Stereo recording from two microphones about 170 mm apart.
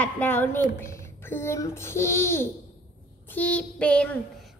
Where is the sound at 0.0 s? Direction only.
10° left (ahead or behind).